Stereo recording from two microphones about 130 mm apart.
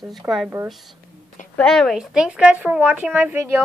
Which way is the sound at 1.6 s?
5° left (ahead or behind).